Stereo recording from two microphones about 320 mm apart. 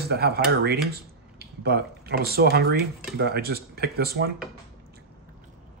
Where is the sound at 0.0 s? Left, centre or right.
Right.